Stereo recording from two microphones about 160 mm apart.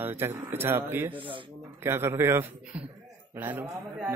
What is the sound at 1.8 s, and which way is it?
Speech, 15° right (ahead or behind).